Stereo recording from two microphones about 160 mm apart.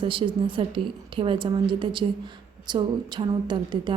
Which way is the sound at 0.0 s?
30° right (ahead or behind).